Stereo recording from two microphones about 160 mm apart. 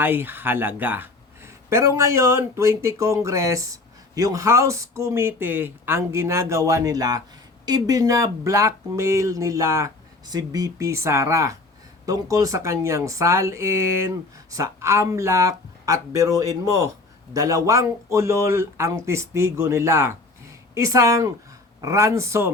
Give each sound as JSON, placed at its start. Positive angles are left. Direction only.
{"t": 0.0, "sound": "speech", "side_deg": -15}